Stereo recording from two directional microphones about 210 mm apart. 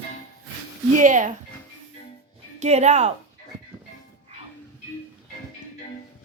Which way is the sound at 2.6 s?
30° right (ahead or behind).